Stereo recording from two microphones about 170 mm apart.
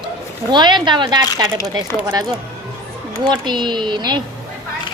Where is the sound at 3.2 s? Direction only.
25° right (ahead or behind).